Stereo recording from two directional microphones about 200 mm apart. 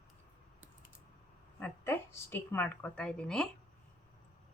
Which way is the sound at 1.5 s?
10° left (ahead or behind).